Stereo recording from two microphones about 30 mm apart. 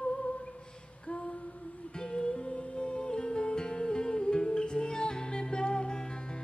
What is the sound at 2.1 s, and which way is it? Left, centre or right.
Music, left.